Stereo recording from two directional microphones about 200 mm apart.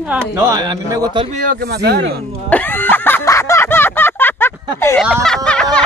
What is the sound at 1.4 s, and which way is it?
Speech, 50° right (ahead or behind).